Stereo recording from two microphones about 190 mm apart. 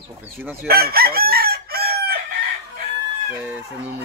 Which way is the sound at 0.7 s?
55° right (ahead or behind).